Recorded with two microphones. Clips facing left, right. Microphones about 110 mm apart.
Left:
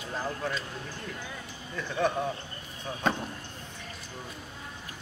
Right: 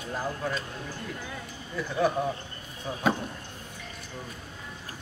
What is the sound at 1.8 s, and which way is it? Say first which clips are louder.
Speech: right 2 dB; 5° right (ahead or behind).